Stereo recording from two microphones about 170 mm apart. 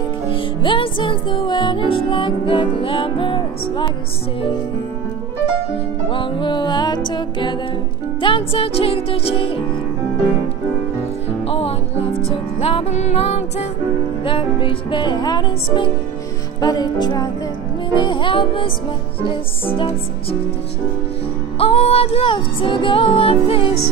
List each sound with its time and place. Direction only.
0.3 s music: 30° left (ahead or behind)
6.0 s music: 30° left (ahead or behind)
11.4 s music: 35° left (ahead or behind)
21.5 s music: 35° left (ahead or behind)